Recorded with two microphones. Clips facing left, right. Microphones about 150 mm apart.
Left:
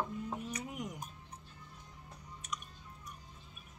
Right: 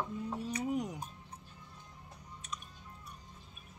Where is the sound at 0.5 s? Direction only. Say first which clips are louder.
Right 7 dB; 30° right (ahead or behind).